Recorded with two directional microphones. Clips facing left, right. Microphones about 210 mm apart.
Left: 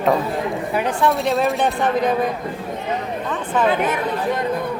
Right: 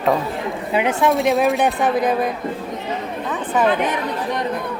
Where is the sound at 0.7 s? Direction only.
20° right (ahead or behind).